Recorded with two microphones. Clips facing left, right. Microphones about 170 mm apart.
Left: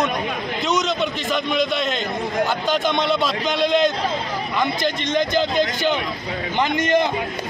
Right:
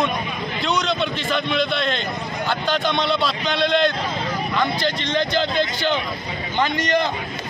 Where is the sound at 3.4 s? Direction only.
10° left (ahead or behind).